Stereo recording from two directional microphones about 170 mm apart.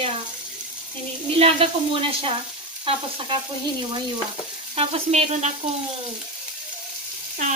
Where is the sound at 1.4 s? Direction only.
35° right (ahead or behind).